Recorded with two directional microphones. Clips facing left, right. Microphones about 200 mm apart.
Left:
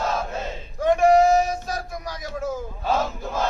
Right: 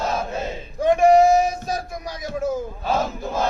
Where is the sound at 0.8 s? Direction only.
20° right (ahead or behind).